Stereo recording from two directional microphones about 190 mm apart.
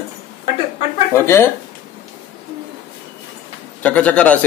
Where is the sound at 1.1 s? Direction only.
15° left (ahead or behind).